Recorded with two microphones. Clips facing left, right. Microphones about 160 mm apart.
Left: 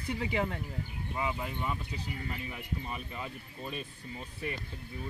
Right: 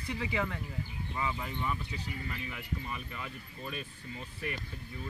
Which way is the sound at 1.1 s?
15° left (ahead or behind).